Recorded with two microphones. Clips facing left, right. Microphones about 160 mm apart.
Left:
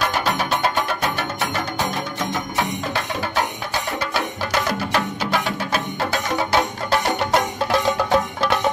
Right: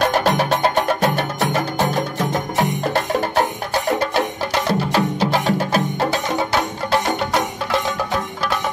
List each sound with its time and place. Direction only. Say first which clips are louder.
0.0 s music: right 5 dB; 40° right (ahead or behind)
2.5 s music: right 4 dB; 45° right (ahead or behind)
4.6 s music: right 4 dB; 30° right (ahead or behind)